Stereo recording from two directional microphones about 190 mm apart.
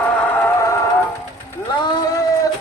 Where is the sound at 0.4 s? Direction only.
15° left (ahead or behind).